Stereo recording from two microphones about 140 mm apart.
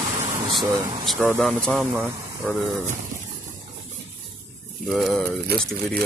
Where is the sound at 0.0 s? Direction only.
50° right (ahead or behind).